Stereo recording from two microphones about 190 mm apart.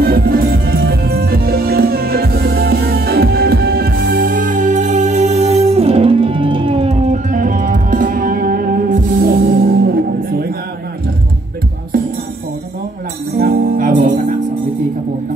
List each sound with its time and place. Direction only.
0.0 s music: 50° right (ahead or behind)
13.4 s music: 45° right (ahead or behind)